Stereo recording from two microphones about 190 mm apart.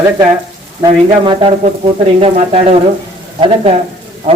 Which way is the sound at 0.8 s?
25° right (ahead or behind).